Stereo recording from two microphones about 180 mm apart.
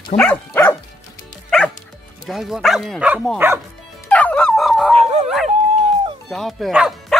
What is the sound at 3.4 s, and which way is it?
Speech, 10° right (ahead or behind).